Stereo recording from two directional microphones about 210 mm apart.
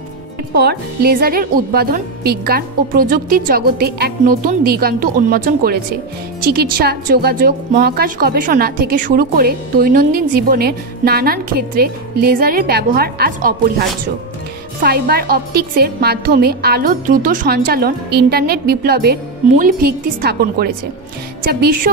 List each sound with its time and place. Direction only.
0.6 s a woman's voice: 50° right (ahead or behind)